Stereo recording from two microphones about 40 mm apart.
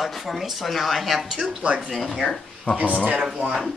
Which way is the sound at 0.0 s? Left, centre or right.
Centre.